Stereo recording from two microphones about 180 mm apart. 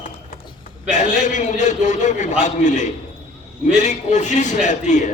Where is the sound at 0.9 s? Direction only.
40° left (ahead or behind).